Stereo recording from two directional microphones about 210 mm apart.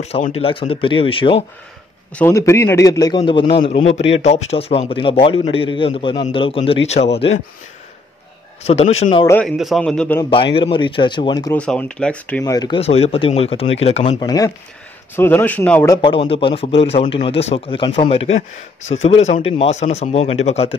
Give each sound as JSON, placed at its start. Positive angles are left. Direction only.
{"t": 0.0, "sound": "a man's voice", "side_deg": 30}
{"t": 2.1, "sound": "a man's voice", "side_deg": 10}
{"t": 8.6, "sound": "speech", "side_deg": 30}
{"t": 9.2, "sound": "a man's voice", "side_deg": 10}
{"t": 9.6, "sound": "speech", "side_deg": 0}
{"t": 10.3, "sound": "a man's voice", "side_deg": 25}
{"t": 11.5, "sound": "speech", "side_deg": 5}
{"t": 12.5, "sound": "a man's voice", "side_deg": 20}
{"t": 14.2, "sound": "a man's voice", "side_deg": 15}
{"t": 15.9, "sound": "a man's voice", "side_deg": 20}